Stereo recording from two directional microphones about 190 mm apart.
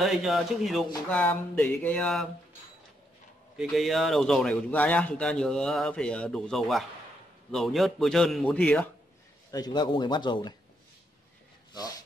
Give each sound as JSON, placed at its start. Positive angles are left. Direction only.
{"t": 0.0, "sound": "a man's voice", "side_deg": 0}
{"t": 1.0, "sound": "a sound", "side_deg": 10}
{"t": 3.5, "sound": "a man's voice", "side_deg": 0}
{"t": 9.5, "sound": "speech", "side_deg": 20}